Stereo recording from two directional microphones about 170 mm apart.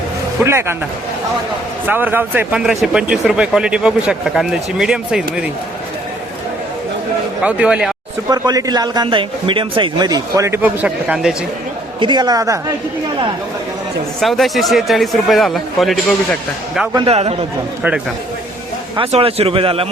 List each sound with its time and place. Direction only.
0.4 s speech: 15° right (ahead or behind)
1.9 s speech: 10° right (ahead or behind)
7.4 s speech: 5° right (ahead or behind)
8.3 s a man's voice: 20° right (ahead or behind); by 11.3 s 5° right (ahead or behind)
11.9 s a man's voice: 25° right (ahead or behind)
14.2 s speech: centre (ahead or behind)
17.1 s a man's voice: 35° right (ahead or behind)
18.9 s a man's voice: 35° right (ahead or behind)